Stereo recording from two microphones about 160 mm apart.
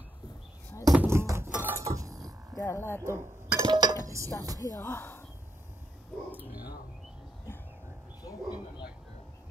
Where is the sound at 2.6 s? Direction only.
15° left (ahead or behind).